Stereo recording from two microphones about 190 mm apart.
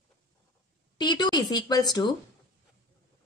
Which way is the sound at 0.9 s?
20° left (ahead or behind).